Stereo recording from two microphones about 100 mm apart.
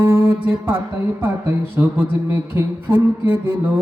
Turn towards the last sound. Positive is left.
turn(degrees=-20)  # may be behind; listen again after turning